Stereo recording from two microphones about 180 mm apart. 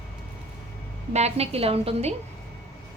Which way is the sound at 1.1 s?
35° right (ahead or behind).